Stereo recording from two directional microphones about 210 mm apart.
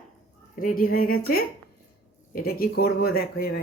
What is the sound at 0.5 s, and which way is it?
Speech, 40° left (ahead or behind).